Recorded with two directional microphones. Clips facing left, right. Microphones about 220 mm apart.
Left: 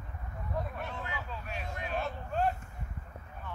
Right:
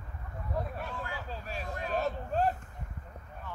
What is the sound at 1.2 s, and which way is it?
Vehicle, 35° right (ahead or behind).